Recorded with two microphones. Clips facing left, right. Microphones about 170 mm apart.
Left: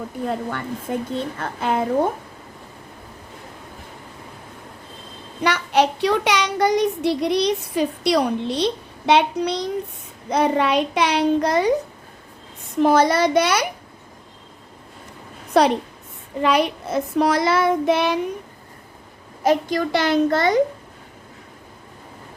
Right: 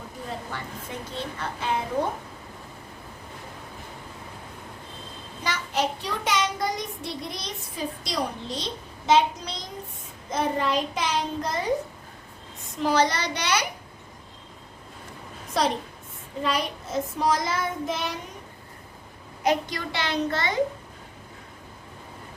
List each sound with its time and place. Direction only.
0.3 s a child's voice: 55° left (ahead or behind)
5.4 s a child's voice: 70° left (ahead or behind)
12.8 s a child's voice: 50° left (ahead or behind)
15.6 s a child's voice: 65° left (ahead or behind)
19.4 s a child's voice: 45° left (ahead or behind)